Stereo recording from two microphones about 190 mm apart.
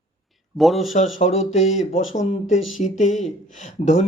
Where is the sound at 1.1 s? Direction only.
40° left (ahead or behind).